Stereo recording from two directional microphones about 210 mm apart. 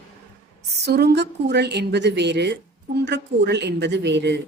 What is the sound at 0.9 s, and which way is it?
Speech, 50° right (ahead or behind).